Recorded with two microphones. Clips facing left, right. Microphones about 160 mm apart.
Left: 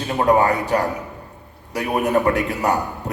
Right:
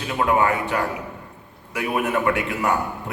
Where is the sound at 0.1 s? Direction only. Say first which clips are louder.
Left 3 dB; 40° left (ahead or behind).